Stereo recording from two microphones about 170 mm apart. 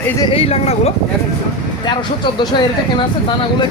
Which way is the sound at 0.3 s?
35° left (ahead or behind).